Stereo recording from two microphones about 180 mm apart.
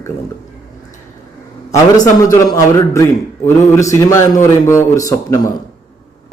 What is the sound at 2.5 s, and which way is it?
A man's voice, 15° left (ahead or behind).